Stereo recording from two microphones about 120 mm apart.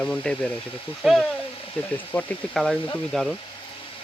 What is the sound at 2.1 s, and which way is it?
Speech, 30° left (ahead or behind).